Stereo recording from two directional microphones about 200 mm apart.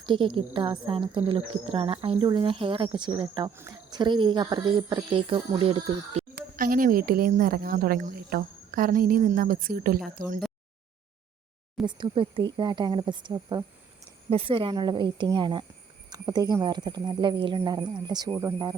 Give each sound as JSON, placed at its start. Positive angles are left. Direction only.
{"t": 0.0, "sound": "a woman's voice", "side_deg": -25}
{"t": 3.5, "sound": "a woman's voice", "side_deg": -15}
{"t": 6.1, "sound": "speech", "side_deg": -45}
{"t": 11.9, "sound": "a woman's voice", "side_deg": -20}